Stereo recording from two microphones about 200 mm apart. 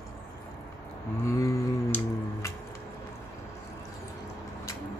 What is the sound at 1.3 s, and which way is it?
Music, 15° left (ahead or behind).